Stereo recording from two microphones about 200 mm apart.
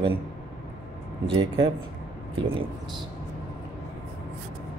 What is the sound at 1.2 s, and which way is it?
Speech, 25° right (ahead or behind).